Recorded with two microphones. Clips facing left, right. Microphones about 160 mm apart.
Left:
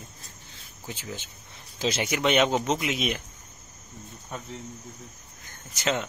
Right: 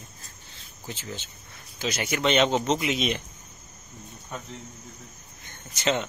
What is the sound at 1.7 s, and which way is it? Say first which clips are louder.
Speech: left 3 dB; 30° left (ahead or behind).